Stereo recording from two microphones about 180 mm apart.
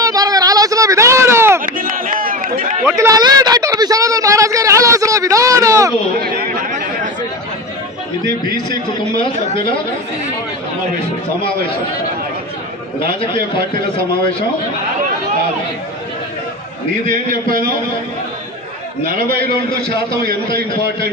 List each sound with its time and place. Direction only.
0.0 s a sound: 20° right (ahead or behind)
1.8 s run: 50° right (ahead or behind)
3.0 s a sound: 20° right (ahead or behind)
6.2 s chatter: 55° right (ahead or behind)
8.6 s a man's voice: 25° left (ahead or behind)
13.0 s a man's voice: 30° left (ahead or behind)
17.1 s a man's voice: 50° right (ahead or behind)